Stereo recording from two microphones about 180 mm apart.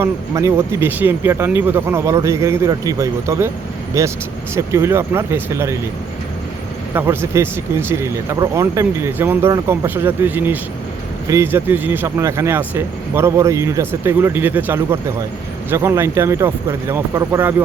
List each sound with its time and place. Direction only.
0.0 s speech: 15° right (ahead or behind)
6.9 s speech: 15° right (ahead or behind)